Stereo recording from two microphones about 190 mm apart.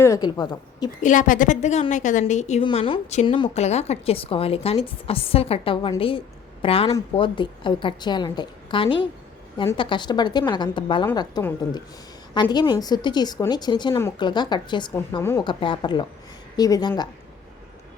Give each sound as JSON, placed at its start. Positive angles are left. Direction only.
{"t": 0.0, "sound": "a woman's voice", "side_deg": 20}
{"t": 1.0, "sound": "a woman's voice", "side_deg": 45}
{"t": 2.6, "sound": "a woman's voice", "side_deg": 25}
{"t": 15.2, "sound": "speech", "side_deg": 15}
{"t": 15.4, "sound": "a woman's voice", "side_deg": 25}